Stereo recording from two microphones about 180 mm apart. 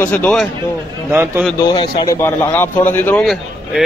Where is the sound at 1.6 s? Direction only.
25° left (ahead or behind).